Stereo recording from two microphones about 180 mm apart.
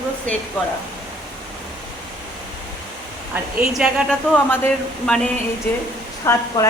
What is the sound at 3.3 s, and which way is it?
Speech, 5° right (ahead or behind).